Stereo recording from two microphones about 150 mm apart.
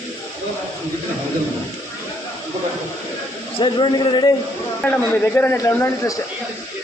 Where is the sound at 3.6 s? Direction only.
30° left (ahead or behind).